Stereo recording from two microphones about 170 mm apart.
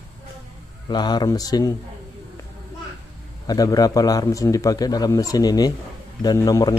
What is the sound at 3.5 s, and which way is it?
A man's voice, 20° left (ahead or behind).